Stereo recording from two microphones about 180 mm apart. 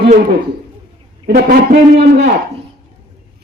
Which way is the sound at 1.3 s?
65° right (ahead or behind).